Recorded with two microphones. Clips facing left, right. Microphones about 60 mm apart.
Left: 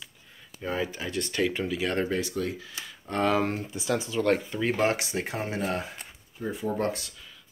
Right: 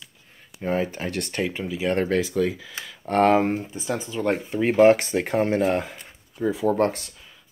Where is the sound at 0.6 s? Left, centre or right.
Right.